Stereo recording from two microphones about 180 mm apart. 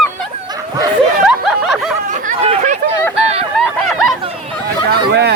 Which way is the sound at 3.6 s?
Centre (ahead or behind).